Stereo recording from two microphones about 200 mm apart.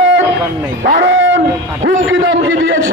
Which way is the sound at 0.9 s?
65° right (ahead or behind).